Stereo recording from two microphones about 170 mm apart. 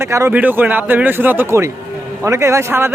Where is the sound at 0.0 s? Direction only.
15° right (ahead or behind).